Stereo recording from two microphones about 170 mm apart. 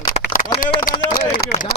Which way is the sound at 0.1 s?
50° left (ahead or behind).